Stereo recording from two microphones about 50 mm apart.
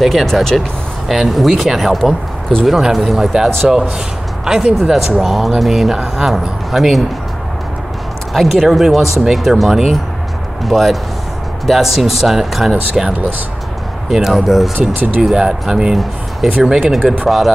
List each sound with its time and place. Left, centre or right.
0.0 s speech: centre
1.0 s a man's voice: centre
8.3 s a man's voice: centre